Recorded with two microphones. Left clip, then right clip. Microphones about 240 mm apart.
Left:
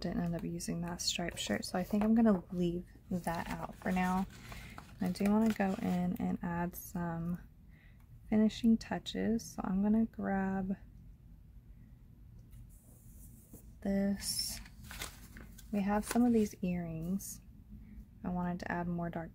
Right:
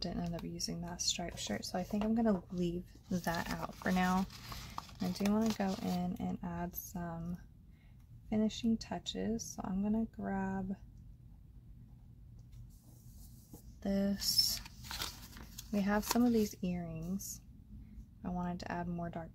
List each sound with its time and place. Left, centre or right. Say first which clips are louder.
0.0 s speech: left 2 dB; centre
3.1 s speech: right 1 dB; centre
5.0 s speech: left 3 dB; centre
13.8 s speech: even; centre
15.7 s speech: even; centre
18.2 s speech: left 2 dB; centre